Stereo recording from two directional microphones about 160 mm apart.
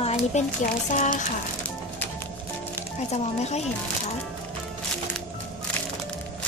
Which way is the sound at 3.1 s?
45° left (ahead or behind).